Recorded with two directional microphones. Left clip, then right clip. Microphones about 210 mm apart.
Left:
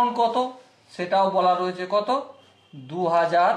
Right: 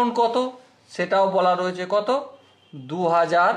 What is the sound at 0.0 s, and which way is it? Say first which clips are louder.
A man's voice: right 1 dB; 50° right (ahead or behind).